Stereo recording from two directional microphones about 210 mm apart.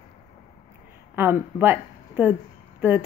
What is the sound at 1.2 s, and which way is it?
Speech, 10° right (ahead or behind).